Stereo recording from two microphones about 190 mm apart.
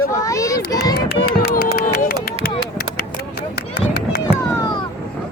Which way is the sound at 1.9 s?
55° left (ahead or behind).